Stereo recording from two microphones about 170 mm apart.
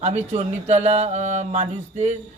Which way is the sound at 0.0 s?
40° right (ahead or behind).